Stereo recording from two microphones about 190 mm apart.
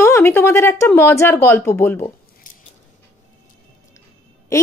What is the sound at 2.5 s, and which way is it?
Scissors, 45° left (ahead or behind).